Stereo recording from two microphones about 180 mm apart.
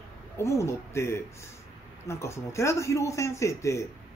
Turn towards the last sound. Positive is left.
turn(degrees=15)  # may be behind; listen again after turning